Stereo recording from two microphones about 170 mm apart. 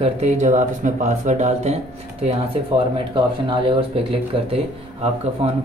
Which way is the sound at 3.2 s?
30° right (ahead or behind).